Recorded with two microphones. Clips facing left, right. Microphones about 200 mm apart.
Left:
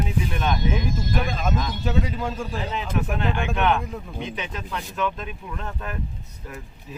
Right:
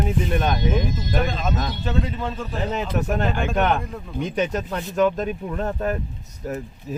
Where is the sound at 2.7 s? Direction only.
45° right (ahead or behind).